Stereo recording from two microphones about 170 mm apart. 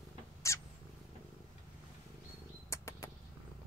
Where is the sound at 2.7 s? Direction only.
15° left (ahead or behind).